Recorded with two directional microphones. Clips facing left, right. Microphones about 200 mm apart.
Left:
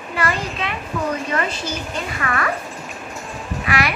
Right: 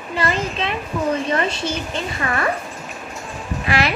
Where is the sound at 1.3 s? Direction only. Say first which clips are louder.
Right 2 dB; 25° right (ahead or behind).